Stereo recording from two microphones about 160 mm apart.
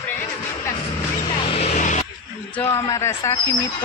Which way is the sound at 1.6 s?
50° left (ahead or behind).